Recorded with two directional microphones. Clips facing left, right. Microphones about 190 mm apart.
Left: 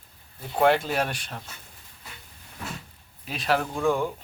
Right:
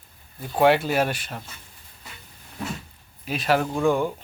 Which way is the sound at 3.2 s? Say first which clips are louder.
Right 3 dB; 5° right (ahead or behind).